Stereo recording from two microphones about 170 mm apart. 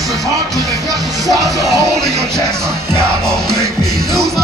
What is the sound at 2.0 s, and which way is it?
Music, 5° left (ahead or behind).